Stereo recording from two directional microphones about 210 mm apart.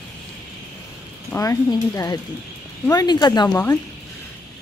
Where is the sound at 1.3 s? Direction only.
15° left (ahead or behind).